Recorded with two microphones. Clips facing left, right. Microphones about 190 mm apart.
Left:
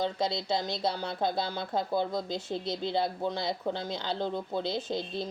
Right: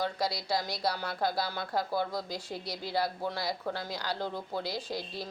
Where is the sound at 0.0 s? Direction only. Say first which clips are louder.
Left 2 dB; 25° left (ahead or behind).